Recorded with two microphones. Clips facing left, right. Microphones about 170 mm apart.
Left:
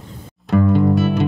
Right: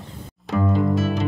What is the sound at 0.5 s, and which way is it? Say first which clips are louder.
Music: left 5 dB; 65° left (ahead or behind).